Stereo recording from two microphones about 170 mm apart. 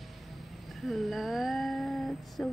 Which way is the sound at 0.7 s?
Centre (ahead or behind).